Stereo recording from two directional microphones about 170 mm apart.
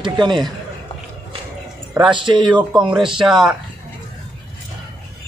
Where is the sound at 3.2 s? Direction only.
5° right (ahead or behind).